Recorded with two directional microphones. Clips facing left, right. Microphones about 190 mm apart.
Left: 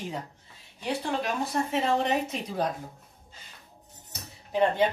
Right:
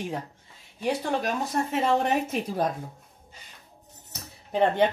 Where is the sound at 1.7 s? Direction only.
50° right (ahead or behind).